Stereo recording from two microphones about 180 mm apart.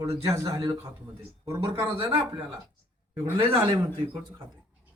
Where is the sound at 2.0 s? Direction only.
30° right (ahead or behind).